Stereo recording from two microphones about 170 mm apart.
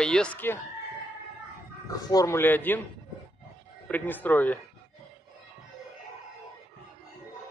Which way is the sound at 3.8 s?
10° left (ahead or behind).